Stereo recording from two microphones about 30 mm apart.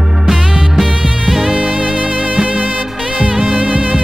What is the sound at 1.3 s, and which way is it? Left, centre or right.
Music, centre.